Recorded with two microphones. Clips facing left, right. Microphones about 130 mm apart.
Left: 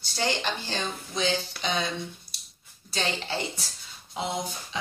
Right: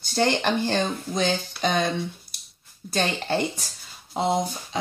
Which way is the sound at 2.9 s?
50° right (ahead or behind).